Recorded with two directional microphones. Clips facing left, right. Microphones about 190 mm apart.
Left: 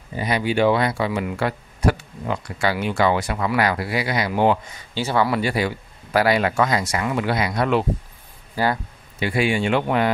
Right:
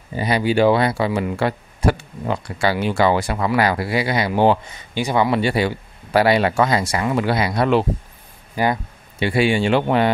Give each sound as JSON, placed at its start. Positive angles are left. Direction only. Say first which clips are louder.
{"t": 0.1, "sound": "speech", "louder": "right 3 dB", "side_deg": -30}
{"t": 4.9, "sound": "speech", "louder": "right 2 dB", "side_deg": -15}
{"t": 8.6, "sound": "speech", "louder": "right 2 dB", "side_deg": -15}
{"t": 9.2, "sound": "speech", "louder": "right 3 dB", "side_deg": -30}